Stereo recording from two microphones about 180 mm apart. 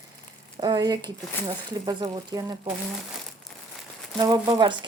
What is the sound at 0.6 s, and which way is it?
Speech, 25° right (ahead or behind).